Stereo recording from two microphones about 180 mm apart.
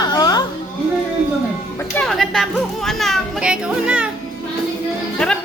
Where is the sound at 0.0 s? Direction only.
20° left (ahead or behind).